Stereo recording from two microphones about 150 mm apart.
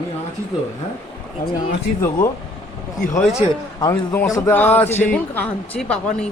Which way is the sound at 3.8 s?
30° left (ahead or behind).